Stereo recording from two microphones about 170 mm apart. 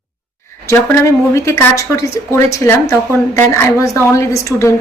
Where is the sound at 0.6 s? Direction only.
15° left (ahead or behind).